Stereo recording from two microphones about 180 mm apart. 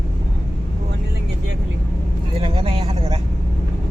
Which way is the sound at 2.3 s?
30° right (ahead or behind).